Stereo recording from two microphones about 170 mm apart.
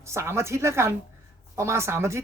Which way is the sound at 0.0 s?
15° right (ahead or behind).